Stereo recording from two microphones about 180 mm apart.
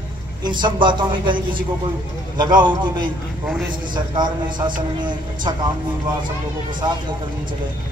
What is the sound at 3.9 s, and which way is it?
A man's voice, 25° right (ahead or behind).